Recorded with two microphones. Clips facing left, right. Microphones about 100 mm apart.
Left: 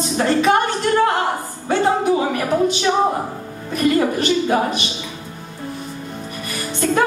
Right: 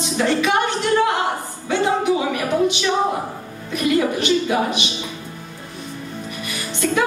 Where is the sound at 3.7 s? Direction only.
40° left (ahead or behind).